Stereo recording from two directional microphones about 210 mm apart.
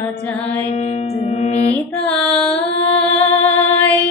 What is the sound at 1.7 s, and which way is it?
Female singing, 5° left (ahead or behind).